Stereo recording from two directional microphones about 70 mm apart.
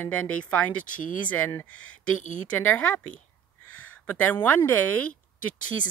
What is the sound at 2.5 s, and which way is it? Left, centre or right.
A woman's voice, left.